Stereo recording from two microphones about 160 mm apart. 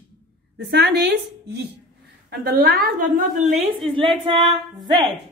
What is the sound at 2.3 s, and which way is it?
A woman's voice, 75° right (ahead or behind).